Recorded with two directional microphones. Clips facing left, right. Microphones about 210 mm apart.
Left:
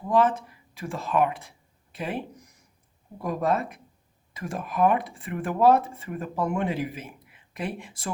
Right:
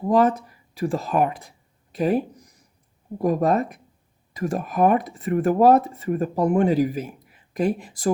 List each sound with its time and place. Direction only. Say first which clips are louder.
0.1 s speech: right 4 dB; 40° right (ahead or behind)